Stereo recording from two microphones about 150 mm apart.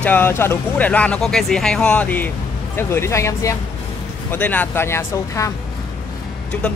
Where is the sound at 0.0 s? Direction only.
15° left (ahead or behind).